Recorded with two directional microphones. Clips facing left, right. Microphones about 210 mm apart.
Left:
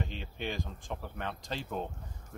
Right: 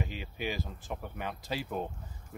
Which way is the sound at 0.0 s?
5° right (ahead or behind).